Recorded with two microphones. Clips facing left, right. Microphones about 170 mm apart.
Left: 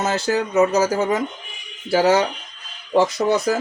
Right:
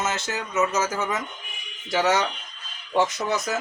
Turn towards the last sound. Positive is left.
turn(degrees=35)  # may be behind; listen again after turning